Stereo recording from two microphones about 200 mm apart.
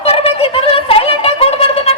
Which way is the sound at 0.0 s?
30° left (ahead or behind).